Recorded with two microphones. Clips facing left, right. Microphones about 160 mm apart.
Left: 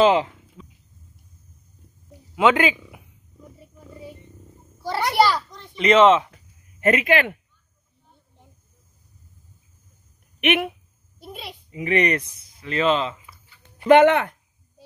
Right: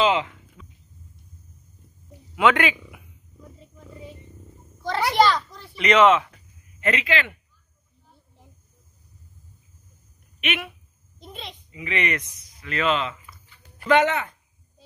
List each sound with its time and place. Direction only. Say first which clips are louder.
0.0 s a sound: left 4 dB; 35° left (ahead or behind)
2.3 s speech: left 2 dB; 25° left (ahead or behind)
3.4 s wild animals: left 1 dB; 10° left (ahead or behind)
4.7 s a sound: even; 10° left (ahead or behind)
5.1 s a child's voice: even; 10° left (ahead or behind)
5.8 s speech: left 2 dB; 30° left (ahead or behind)
6.8 s speech: left 6 dB; 45° left (ahead or behind)
10.4 s speech: left 8 dB; 55° left (ahead or behind)
11.1 s a sound: left 2 dB; 5° left (ahead or behind)
11.7 s speech: left 6 dB; 45° left (ahead or behind); by 13.1 s 30° left (ahead or behind)
13.8 s speech: left 6 dB; 60° left (ahead or behind)